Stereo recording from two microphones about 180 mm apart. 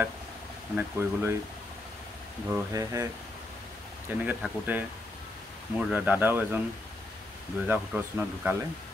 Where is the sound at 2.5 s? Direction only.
15° right (ahead or behind).